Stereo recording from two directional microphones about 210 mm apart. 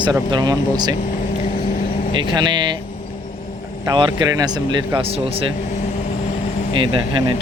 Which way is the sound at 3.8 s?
20° right (ahead or behind).